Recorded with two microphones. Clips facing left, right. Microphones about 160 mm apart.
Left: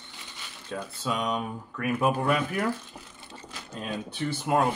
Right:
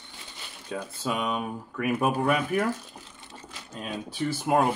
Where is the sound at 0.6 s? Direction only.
10° right (ahead or behind).